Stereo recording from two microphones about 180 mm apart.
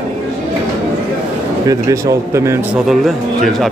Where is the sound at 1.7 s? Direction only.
20° right (ahead or behind).